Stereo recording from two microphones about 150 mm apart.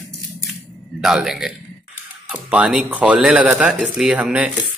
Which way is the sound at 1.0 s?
5° right (ahead or behind).